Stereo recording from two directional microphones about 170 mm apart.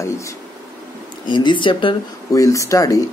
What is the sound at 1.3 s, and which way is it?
Speech, 25° left (ahead or behind).